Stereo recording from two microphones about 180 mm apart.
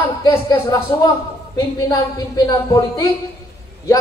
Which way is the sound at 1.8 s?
20° left (ahead or behind).